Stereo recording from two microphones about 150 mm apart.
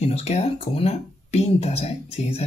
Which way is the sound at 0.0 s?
45° left (ahead or behind).